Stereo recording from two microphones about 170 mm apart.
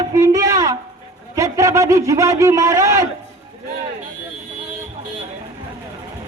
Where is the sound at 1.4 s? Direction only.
20° right (ahead or behind).